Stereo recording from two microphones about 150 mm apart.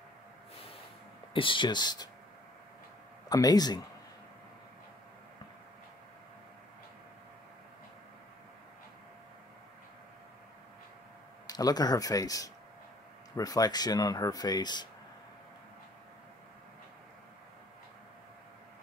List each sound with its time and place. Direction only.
1.3 s speech: 35° left (ahead or behind)
3.3 s speech: 25° left (ahead or behind)
11.4 s speech: 25° left (ahead or behind)